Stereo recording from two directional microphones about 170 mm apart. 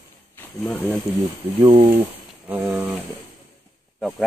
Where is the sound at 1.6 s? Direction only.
35° right (ahead or behind).